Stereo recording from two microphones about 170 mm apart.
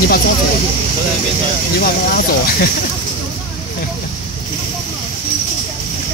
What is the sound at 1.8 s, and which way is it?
Speech, 60° left (ahead or behind).